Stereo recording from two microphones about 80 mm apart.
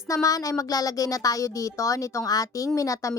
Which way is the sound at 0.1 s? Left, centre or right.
Left.